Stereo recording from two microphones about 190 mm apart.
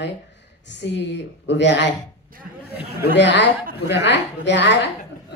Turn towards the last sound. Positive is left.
turn(degrees=70)  # may be behind; listen again after turning